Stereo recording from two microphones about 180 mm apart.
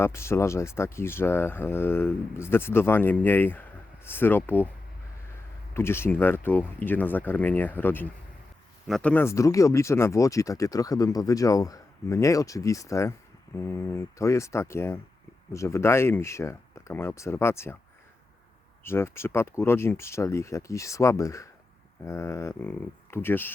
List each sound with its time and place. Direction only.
0.0 s speech: 15° left (ahead or behind)
5.7 s speech: 15° left (ahead or behind)
18.8 s speech: 15° left (ahead or behind)